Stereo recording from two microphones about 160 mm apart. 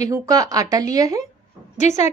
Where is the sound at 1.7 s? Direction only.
45° left (ahead or behind).